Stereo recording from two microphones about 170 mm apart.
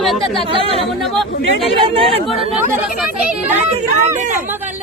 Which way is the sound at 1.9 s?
35° right (ahead or behind).